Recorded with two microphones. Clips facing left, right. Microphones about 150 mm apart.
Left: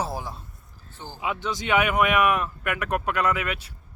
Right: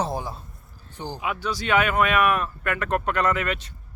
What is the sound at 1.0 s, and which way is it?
Speech, 15° right (ahead or behind).